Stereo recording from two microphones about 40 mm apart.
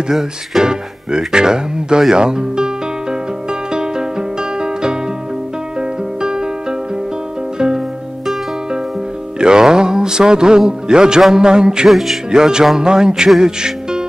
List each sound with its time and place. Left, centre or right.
0.1 s speech: centre
2.1 s music: centre
7.5 s music: centre
9.4 s speech: centre
11.9 s speech: centre
12.3 s speech: centre